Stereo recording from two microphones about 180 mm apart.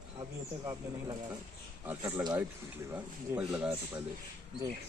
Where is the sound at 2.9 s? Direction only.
5° right (ahead or behind).